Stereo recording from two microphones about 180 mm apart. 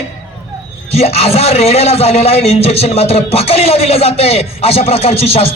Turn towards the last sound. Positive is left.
turn(degrees=35)  # may be behind; listen again after turning